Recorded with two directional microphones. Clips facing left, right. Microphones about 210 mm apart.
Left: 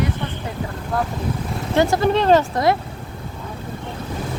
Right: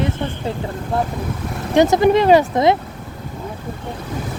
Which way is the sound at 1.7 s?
20° right (ahead or behind).